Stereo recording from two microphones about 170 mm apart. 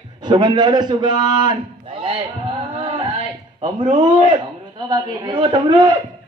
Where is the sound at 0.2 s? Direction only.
25° right (ahead or behind).